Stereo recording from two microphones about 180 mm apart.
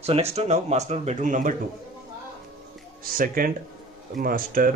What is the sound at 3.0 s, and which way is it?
Speech, 50° right (ahead or behind).